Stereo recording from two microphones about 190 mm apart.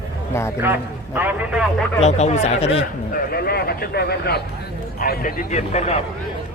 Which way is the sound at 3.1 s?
55° left (ahead or behind).